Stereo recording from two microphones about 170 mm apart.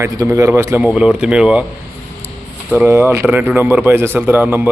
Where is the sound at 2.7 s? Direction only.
15° right (ahead or behind).